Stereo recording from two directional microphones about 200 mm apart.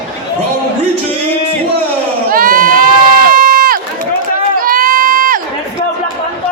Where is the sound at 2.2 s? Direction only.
45° right (ahead or behind).